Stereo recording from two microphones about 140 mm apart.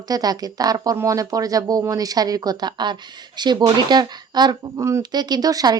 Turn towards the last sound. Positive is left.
turn(degrees=-25)  # may be behind; listen again after turning